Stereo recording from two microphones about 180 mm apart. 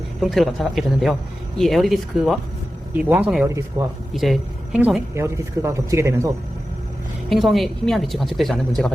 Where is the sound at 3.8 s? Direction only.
20° right (ahead or behind).